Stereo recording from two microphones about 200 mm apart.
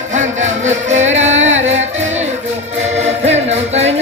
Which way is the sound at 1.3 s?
75° right (ahead or behind).